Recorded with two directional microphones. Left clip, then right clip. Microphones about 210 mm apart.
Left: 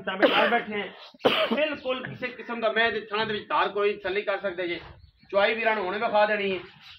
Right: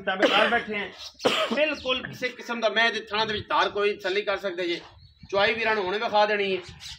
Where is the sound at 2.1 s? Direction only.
50° right (ahead or behind).